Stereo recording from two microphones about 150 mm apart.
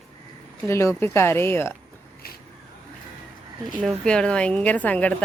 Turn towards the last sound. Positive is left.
turn(degrees=10)  # may be behind; listen again after turning